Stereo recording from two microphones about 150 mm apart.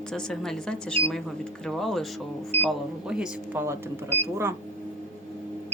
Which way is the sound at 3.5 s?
15° right (ahead or behind).